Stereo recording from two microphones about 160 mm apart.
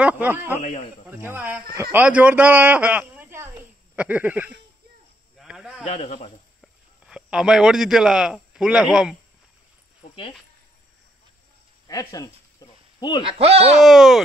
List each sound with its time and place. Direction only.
0.0 s a man's voice: 10° right (ahead or behind)
0.6 s a man's voice: 45° left (ahead or behind)
1.0 s a man's voice: 15° right (ahead or behind)
5.4 s a sound: 5° right (ahead or behind)
5.9 s a man's voice: 40° left (ahead or behind)
6.6 s a man's voice: 5° right (ahead or behind)
11.9 s cricket: 20° left (ahead or behind)
13.2 s speech: 35° right (ahead or behind)
13.7 s speech: centre (ahead or behind)